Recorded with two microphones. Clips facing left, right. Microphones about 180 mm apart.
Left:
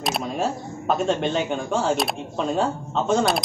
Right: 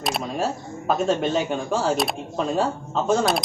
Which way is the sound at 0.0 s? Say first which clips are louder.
Even; centre (ahead or behind).